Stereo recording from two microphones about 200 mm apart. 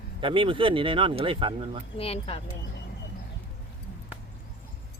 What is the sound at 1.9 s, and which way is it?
Speech, 30° left (ahead or behind).